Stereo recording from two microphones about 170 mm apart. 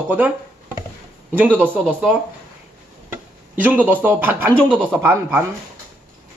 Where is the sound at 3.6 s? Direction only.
10° right (ahead or behind).